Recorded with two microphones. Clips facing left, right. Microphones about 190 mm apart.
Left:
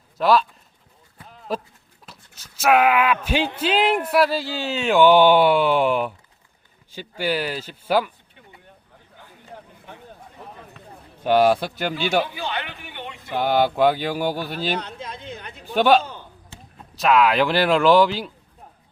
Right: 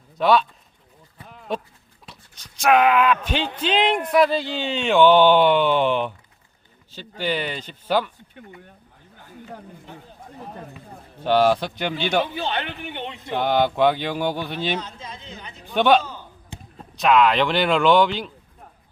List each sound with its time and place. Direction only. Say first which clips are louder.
0.2 s speech: even; centre (ahead or behind)
1.5 s speech: even; 5° left (ahead or behind)
8.4 s speech: right 8 dB; 50° right (ahead or behind)
11.2 s speech: left 1 dB; 10° left (ahead or behind)
12.4 s a sound: right 3 dB; 25° right (ahead or behind)
13.3 s speech: left 1 dB; 5° left (ahead or behind)
14.8 s a woman's voice: left 2 dB; 60° left (ahead or behind)
15.7 s speech: left 1 dB; 5° left (ahead or behind)